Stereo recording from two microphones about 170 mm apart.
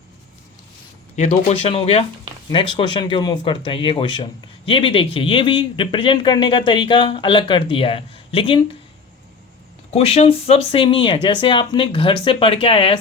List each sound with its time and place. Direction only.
1.1 s speech: 40° left (ahead or behind)
9.9 s speech: 35° left (ahead or behind)